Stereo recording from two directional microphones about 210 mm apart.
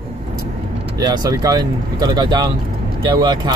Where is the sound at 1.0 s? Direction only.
15° right (ahead or behind).